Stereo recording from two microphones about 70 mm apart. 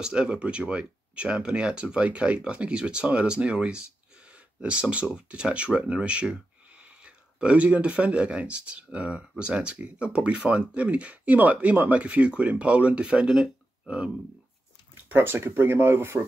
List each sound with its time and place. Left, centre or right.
0.0 s speech: centre
15.0 s speech: right